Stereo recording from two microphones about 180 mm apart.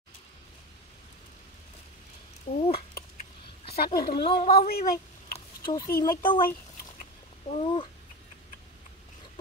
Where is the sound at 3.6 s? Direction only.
60° left (ahead or behind).